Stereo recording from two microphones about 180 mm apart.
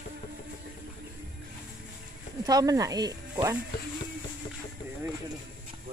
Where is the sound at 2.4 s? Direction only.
20° right (ahead or behind).